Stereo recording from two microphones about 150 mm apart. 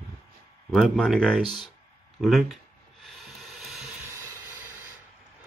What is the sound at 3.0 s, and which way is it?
Hiss, centre (ahead or behind).